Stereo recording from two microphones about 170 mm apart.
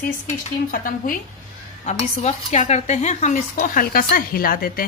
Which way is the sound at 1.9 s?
40° left (ahead or behind).